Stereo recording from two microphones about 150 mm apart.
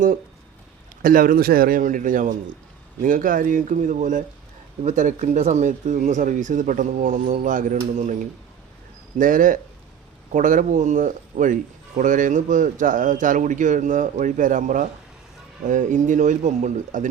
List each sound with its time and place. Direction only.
1.0 s a man's voice: 70° right (ahead or behind)